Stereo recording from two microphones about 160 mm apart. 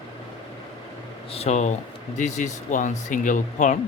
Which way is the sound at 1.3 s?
45° left (ahead or behind).